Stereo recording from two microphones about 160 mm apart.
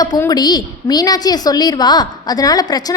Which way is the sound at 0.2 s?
25° left (ahead or behind).